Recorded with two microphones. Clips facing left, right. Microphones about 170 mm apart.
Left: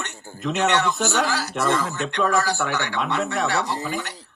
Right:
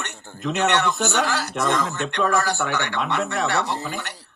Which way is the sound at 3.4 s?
60° right (ahead or behind).